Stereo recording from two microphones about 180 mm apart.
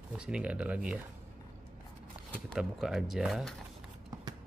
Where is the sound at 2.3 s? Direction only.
Centre (ahead or behind).